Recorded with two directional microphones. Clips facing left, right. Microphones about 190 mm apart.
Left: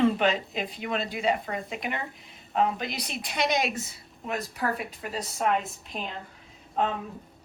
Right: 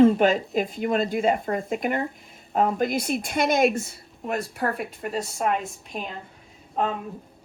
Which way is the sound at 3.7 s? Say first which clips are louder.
Right 6 dB; centre (ahead or behind).